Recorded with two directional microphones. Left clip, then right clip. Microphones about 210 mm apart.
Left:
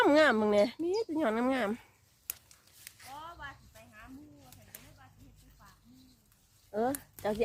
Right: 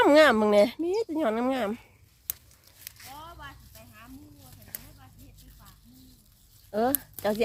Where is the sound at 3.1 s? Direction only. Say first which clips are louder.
Left 1 dB; 55° right (ahead or behind).